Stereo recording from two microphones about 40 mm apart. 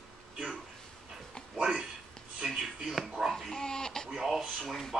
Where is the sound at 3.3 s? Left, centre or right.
Centre.